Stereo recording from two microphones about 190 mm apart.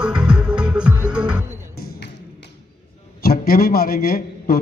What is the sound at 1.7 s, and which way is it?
Music, 55° left (ahead or behind).